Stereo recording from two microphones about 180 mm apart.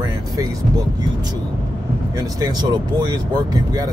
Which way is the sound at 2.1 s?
20° right (ahead or behind).